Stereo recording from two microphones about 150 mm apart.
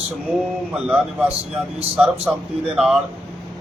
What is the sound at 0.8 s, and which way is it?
Speech, 10° right (ahead or behind).